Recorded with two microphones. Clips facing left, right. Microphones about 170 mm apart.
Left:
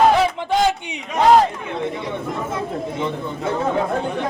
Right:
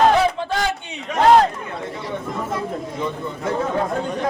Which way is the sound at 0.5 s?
20° left (ahead or behind).